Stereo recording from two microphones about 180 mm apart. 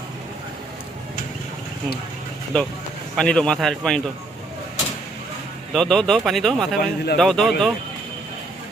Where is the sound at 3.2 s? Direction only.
5° left (ahead or behind).